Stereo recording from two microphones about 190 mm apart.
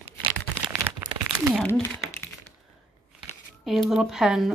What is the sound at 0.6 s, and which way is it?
Crumpling, 20° right (ahead or behind).